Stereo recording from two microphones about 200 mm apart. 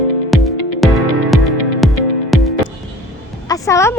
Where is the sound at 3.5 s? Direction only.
15° left (ahead or behind).